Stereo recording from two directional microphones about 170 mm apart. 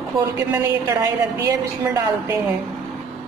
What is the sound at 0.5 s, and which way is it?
A woman's voice, 15° right (ahead or behind).